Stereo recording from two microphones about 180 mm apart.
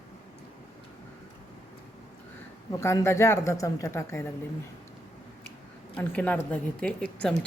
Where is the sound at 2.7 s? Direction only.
15° left (ahead or behind).